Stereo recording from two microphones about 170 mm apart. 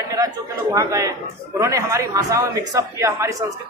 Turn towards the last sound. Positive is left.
turn(degrees=-15)  # may be behind; listen again after turning